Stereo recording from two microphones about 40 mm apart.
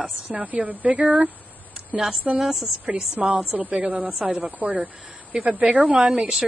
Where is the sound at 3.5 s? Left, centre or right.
Right.